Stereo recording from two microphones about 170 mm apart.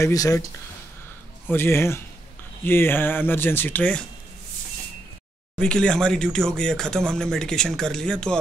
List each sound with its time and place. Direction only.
0.0 s speech: 20° left (ahead or behind)
1.5 s speech: 15° left (ahead or behind)
5.6 s speech: 5° left (ahead or behind)